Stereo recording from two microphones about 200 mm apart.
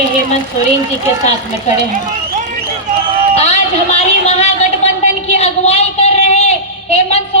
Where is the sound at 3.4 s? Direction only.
35° left (ahead or behind).